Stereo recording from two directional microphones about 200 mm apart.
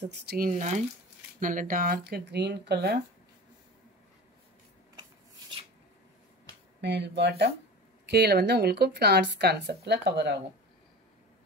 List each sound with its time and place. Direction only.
0.1 s speech: 55° right (ahead or behind)
0.5 s speech: 35° right (ahead or behind); by 3.0 s 55° right (ahead or behind)
6.8 s speech: 60° right (ahead or behind)